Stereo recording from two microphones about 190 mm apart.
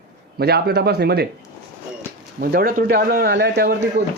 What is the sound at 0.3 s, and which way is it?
Speech, 55° right (ahead or behind).